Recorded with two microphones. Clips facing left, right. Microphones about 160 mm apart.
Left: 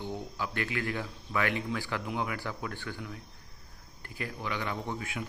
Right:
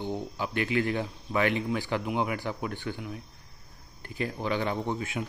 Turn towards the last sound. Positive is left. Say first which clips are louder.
# right 5 dB
turn(degrees=-25)  # may be behind; listen again after turning